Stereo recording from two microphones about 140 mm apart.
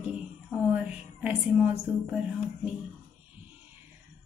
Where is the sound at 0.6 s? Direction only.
10° right (ahead or behind).